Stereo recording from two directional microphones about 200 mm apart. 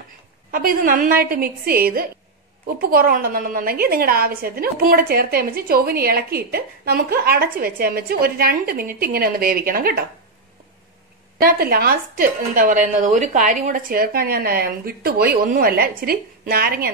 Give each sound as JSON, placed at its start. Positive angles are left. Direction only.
{"t": 0.5, "sound": "a woman's voice", "side_deg": -45}
{"t": 11.3, "sound": "a woman's voice", "side_deg": -50}